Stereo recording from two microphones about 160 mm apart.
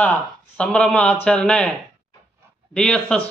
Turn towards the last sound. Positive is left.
turn(degrees=5)  # may be behind; listen again after turning